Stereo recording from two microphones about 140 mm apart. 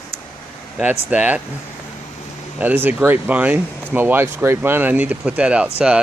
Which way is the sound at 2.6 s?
15° right (ahead or behind).